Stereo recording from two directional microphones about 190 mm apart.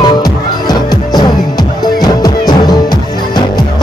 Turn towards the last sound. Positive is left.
turn(degrees=20)  # may be behind; listen again after turning